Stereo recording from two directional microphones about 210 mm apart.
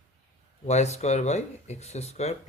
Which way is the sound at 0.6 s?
30° left (ahead or behind).